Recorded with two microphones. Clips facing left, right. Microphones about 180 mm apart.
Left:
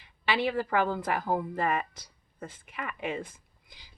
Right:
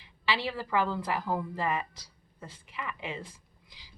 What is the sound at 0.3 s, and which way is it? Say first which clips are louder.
A woman's voice: left 4 dB; 55° left (ahead or behind).